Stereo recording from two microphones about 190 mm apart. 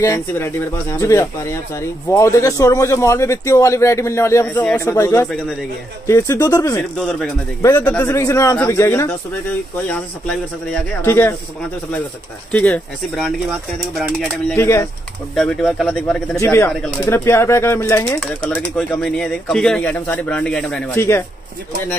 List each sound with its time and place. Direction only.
0.0 s speech: 15° left (ahead or behind)
7.0 s speech: centre (ahead or behind)
12.4 s speech: 5° left (ahead or behind)
14.5 s speech: 15° left (ahead or behind)
15.3 s speech: centre (ahead or behind)
16.3 s speech: 15° left (ahead or behind)